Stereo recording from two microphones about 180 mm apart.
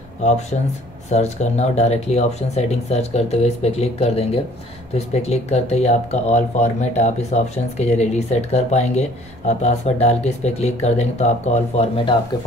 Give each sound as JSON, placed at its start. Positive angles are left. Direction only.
{"t": 0.2, "sound": "speech", "side_deg": 40}